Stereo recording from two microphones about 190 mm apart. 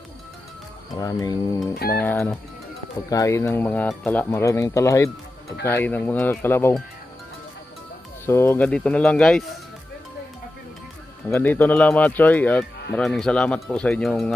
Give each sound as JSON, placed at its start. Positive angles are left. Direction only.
{"t": 0.9, "sound": "speech", "side_deg": 20}
{"t": 1.8, "sound": "speech", "side_deg": 55}
{"t": 2.0, "sound": "speech", "side_deg": 10}
{"t": 8.3, "sound": "speech", "side_deg": 10}
{"t": 11.2, "sound": "speech", "side_deg": 10}